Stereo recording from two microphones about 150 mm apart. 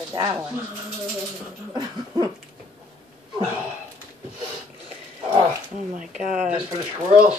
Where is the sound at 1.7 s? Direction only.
25° right (ahead or behind).